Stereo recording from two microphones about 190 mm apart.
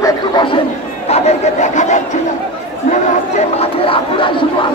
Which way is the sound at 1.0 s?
35° left (ahead or behind).